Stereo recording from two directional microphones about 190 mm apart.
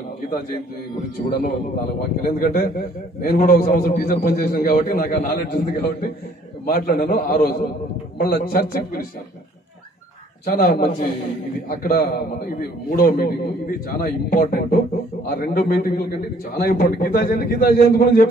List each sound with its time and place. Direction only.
1.2 s a man's voice: 40° left (ahead or behind)
2.2 s a man's voice: 50° left (ahead or behind)
10.4 s a man's voice: 50° left (ahead or behind)